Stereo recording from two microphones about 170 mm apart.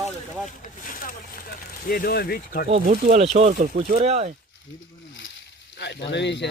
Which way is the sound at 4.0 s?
40° right (ahead or behind).